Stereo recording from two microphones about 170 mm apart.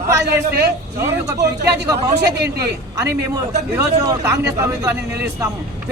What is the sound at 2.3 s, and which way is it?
Speech, 90° right.